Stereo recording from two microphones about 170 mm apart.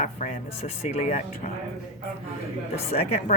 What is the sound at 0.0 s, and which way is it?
Speech, 45° left (ahead or behind).